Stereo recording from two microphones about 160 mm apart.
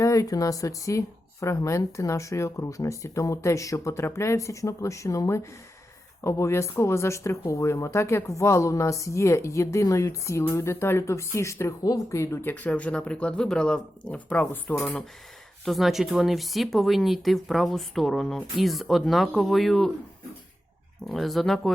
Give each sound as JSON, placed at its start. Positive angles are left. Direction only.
{"t": 0.0, "sound": "speech", "side_deg": 20}
{"t": 21.1, "sound": "speech", "side_deg": 0}